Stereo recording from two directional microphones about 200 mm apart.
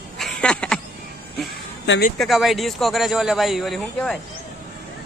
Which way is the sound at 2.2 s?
Centre (ahead or behind).